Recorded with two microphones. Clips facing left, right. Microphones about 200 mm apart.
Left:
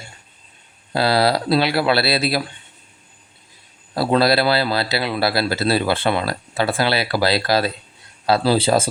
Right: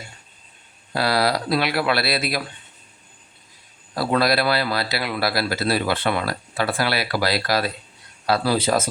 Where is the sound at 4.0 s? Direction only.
30° left (ahead or behind).